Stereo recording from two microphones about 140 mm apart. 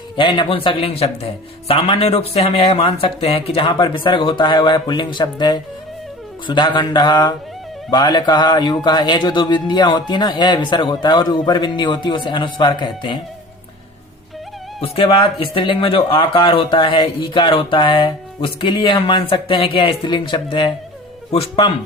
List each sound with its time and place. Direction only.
0.2 s speech: 35° left (ahead or behind)
14.8 s speech: 40° left (ahead or behind)